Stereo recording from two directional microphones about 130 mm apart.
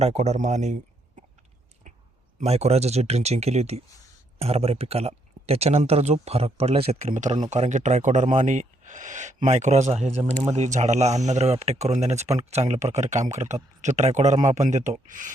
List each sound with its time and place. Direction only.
0.0 s speech: 60° right (ahead or behind)
2.4 s speech: 55° right (ahead or behind)
7.1 s speech: 70° right (ahead or behind); by 15.3 s 90° right